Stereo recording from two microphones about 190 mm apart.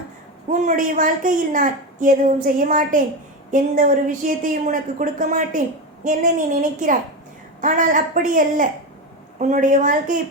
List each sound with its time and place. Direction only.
0.6 s a woman's voice: 45° right (ahead or behind)